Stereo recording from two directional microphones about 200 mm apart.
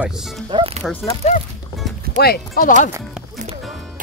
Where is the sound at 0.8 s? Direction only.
5° left (ahead or behind).